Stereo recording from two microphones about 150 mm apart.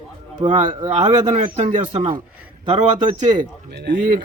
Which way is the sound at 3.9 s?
60° right (ahead or behind).